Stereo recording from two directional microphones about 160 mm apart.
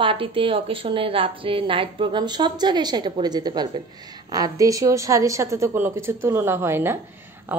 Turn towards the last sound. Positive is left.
turn(degrees=-15)  # may be behind; listen again after turning